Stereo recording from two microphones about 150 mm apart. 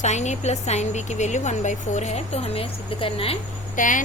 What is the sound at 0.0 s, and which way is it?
A woman's voice, 50° left (ahead or behind).